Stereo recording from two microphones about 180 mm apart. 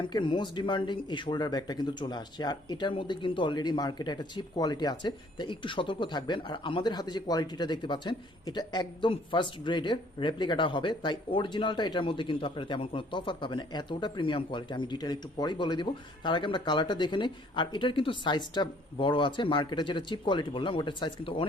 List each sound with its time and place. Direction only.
0.1 s speech: 25° left (ahead or behind)